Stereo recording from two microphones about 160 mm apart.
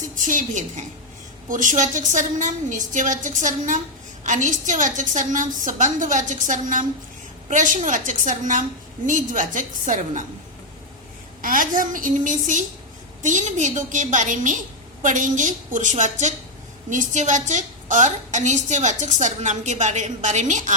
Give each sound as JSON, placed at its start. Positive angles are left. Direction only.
{"t": 0.3, "sound": "a woman's voice", "side_deg": -50}
{"t": 11.4, "sound": "a woman's voice", "side_deg": -60}